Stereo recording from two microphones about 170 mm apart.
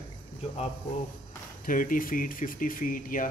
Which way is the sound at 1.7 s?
55° left (ahead or behind).